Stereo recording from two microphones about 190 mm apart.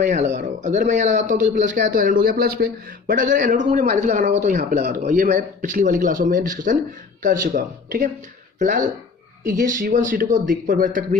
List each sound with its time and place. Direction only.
0.0 s speech: 40° right (ahead or behind)